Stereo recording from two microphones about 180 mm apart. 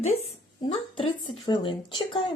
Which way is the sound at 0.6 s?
25° left (ahead or behind).